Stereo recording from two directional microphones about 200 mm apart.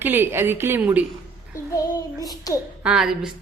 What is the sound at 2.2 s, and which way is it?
Speech, 20° left (ahead or behind).